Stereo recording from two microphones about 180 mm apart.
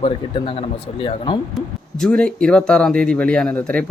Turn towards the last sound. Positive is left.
turn(degrees=5)  # may be behind; listen again after turning